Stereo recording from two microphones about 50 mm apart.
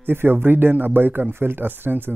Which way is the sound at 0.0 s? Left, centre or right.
Right.